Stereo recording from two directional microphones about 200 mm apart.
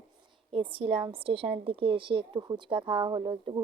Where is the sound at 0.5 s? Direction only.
25° right (ahead or behind).